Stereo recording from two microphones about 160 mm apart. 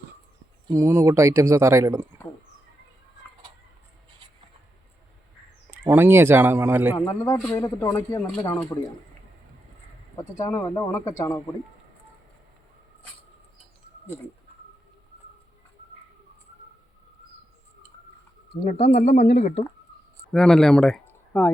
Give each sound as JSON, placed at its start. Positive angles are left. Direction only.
{"t": 0.7, "sound": "speech", "side_deg": -15}
{"t": 5.8, "sound": "speech", "side_deg": -15}
{"t": 6.9, "sound": "a man's voice", "side_deg": 25}
{"t": 10.2, "sound": "a man's voice", "side_deg": 20}
{"t": 18.9, "sound": "speech", "side_deg": 45}
{"t": 20.3, "sound": "speech", "side_deg": 5}
{"t": 21.1, "sound": "a sound", "side_deg": 15}